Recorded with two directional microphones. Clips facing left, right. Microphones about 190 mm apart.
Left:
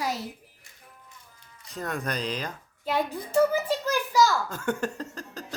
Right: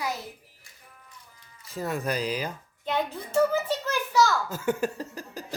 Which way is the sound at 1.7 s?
5° right (ahead or behind).